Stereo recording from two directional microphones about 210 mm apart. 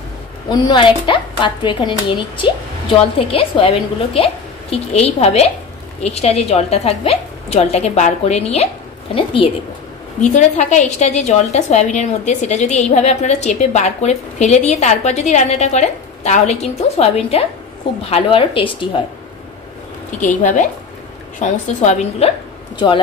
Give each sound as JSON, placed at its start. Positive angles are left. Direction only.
{"t": 0.5, "sound": "a woman's voice", "side_deg": 20}
{"t": 20.2, "sound": "a woman's voice", "side_deg": 35}